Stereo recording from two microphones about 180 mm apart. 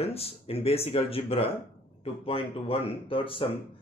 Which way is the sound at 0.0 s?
35° left (ahead or behind).